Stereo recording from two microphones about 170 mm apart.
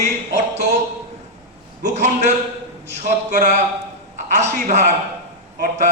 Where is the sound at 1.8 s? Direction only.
45° right (ahead or behind).